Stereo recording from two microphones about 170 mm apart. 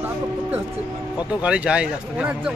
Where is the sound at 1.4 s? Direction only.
5° right (ahead or behind).